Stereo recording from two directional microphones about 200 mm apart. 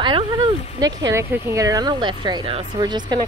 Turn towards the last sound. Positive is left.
turn(degrees=-20)  # may be behind; listen again after turning